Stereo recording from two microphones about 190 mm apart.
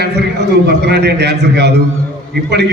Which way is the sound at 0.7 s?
60° right (ahead or behind).